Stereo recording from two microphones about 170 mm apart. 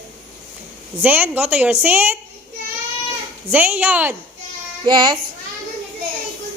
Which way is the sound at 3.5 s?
10° right (ahead or behind).